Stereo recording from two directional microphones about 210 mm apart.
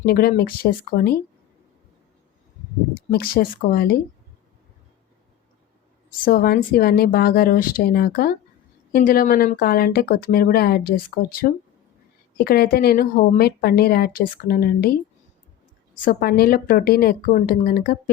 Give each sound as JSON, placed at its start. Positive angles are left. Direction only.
{"t": 0.0, "sound": "speech", "side_deg": 45}
{"t": 3.1, "sound": "speech", "side_deg": 45}
{"t": 6.2, "sound": "speech", "side_deg": 45}
{"t": 16.0, "sound": "speech", "side_deg": 45}